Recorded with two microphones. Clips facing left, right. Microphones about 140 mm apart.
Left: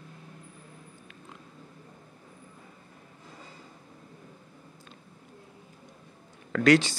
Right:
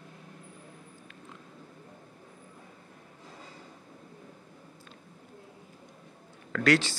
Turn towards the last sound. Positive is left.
turn(degrees=15)  # may be behind; listen again after turning